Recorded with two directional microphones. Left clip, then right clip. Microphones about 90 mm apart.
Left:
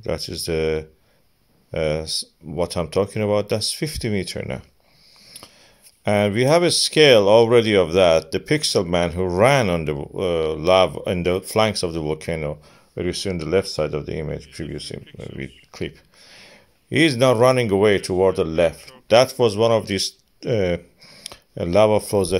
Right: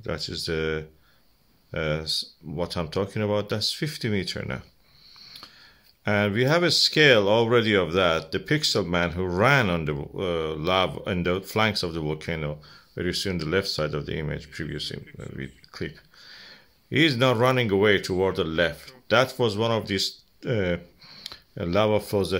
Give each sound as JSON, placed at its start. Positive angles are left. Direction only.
{"t": 0.0, "sound": "speech", "side_deg": 40}
{"t": 15.0, "sound": "speech", "side_deg": 10}
{"t": 15.3, "sound": "speech", "side_deg": 35}